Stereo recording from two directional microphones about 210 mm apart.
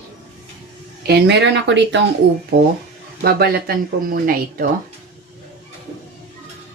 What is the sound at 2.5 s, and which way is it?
Speech, 45° right (ahead or behind).